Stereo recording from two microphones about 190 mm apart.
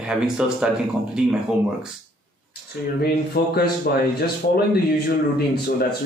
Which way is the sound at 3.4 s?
55° left (ahead or behind).